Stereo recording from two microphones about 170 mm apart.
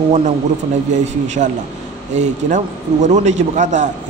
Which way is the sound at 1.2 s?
45° right (ahead or behind).